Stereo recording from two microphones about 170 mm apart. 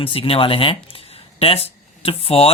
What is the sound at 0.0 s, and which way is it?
Speech, 35° left (ahead or behind).